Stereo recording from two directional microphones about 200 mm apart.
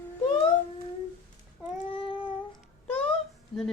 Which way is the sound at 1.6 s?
25° left (ahead or behind).